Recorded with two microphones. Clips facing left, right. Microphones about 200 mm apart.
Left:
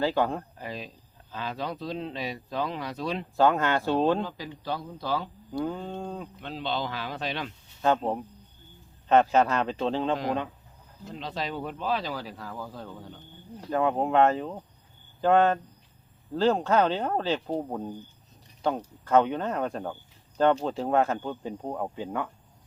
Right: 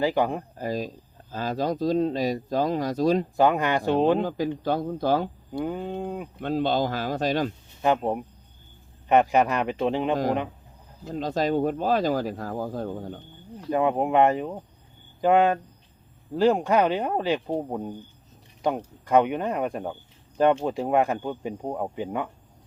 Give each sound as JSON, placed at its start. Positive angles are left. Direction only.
{"t": 0.0, "sound": "speech", "side_deg": -15}
{"t": 0.5, "sound": "speech", "side_deg": -40}
{"t": 3.3, "sound": "speech", "side_deg": -15}
{"t": 4.2, "sound": "speech", "side_deg": -50}
{"t": 5.5, "sound": "speech", "side_deg": -15}
{"t": 6.4, "sound": "speech", "side_deg": -45}
{"t": 7.8, "sound": "speech", "side_deg": -15}
{"t": 11.1, "sound": "speech", "side_deg": -45}
{"t": 13.7, "sound": "speech", "side_deg": -15}